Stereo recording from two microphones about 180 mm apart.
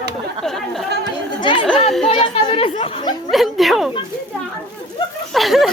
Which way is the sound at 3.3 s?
Centre (ahead or behind).